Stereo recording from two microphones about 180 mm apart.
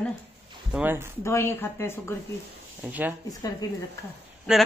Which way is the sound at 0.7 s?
10° right (ahead or behind).